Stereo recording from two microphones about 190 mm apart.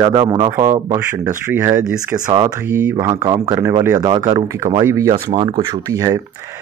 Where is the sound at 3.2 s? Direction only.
20° right (ahead or behind).